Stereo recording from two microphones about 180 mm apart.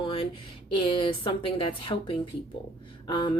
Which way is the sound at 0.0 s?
30° left (ahead or behind).